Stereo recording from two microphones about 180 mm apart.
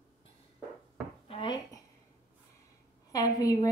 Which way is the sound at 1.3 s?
25° left (ahead or behind).